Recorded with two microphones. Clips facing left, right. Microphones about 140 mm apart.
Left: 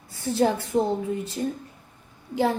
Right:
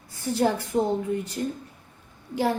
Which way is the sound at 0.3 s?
25° left (ahead or behind).